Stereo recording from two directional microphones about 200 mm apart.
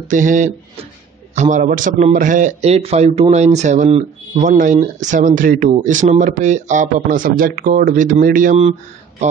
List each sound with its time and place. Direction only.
0.1 s a man's voice: 40° right (ahead or behind)